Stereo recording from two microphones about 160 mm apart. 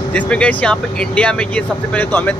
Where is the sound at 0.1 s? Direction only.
5° left (ahead or behind).